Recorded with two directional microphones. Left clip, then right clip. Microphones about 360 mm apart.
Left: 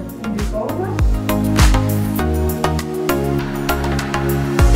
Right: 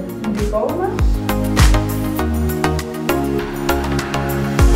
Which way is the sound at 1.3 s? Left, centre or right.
Centre.